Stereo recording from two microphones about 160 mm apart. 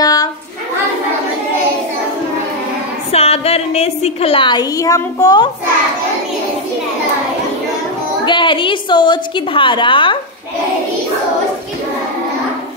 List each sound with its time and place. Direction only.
0.0 s a sound: 25° left (ahead or behind)
3.1 s a woman's voice: 40° left (ahead or behind); by 5.5 s 25° left (ahead or behind)
8.3 s a woman's voice: 30° left (ahead or behind)